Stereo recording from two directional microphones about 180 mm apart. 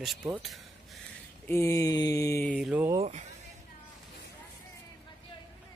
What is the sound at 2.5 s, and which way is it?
Speech, 5° right (ahead or behind).